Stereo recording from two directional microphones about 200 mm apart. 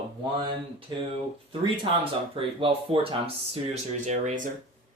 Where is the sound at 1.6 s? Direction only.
25° right (ahead or behind).